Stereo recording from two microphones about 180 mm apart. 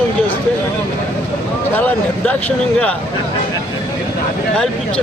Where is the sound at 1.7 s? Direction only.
10° left (ahead or behind).